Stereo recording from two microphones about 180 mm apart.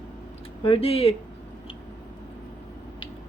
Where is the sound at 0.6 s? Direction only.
30° left (ahead or behind).